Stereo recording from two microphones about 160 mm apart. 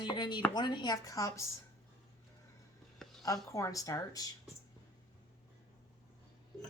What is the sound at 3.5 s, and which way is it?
Speech, 20° left (ahead or behind).